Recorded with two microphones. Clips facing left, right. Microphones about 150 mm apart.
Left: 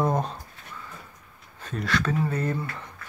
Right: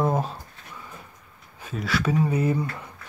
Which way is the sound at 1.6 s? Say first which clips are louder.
Even; 5° right (ahead or behind).